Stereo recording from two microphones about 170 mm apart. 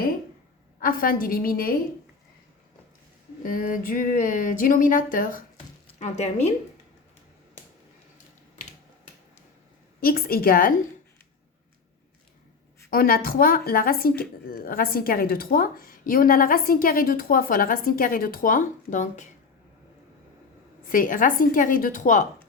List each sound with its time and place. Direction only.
0.8 s speech: 60° left (ahead or behind)
3.4 s a sound: 55° left (ahead or behind)
5.9 s speech: 40° left (ahead or behind)
10.0 s speech: 60° left (ahead or behind)
12.9 s speech: 60° left (ahead or behind)
20.9 s a sound: 55° left (ahead or behind)